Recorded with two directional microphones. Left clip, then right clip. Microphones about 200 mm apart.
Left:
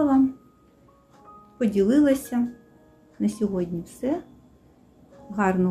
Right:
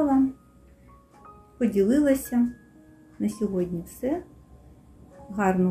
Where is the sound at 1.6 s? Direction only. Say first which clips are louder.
Left 2 dB; 5° left (ahead or behind).